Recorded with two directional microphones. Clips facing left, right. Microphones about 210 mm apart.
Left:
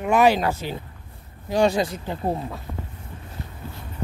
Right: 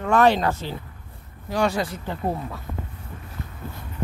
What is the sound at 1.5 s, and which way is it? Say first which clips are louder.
Speech: left 3 dB; 15° left (ahead or behind).